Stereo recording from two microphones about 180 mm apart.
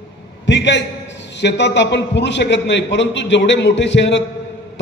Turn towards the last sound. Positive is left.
turn(degrees=85)